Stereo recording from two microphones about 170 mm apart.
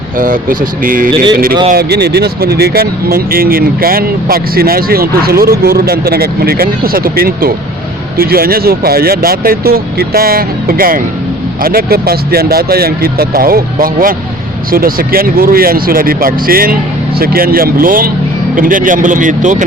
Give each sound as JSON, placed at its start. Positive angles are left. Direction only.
{"t": 0.2, "sound": "speech", "side_deg": -55}
{"t": 1.7, "sound": "speech", "side_deg": -70}